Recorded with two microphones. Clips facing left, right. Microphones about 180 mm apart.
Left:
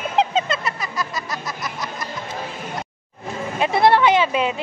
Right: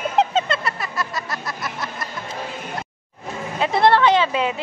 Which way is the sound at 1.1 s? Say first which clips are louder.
Even; 20° left (ahead or behind).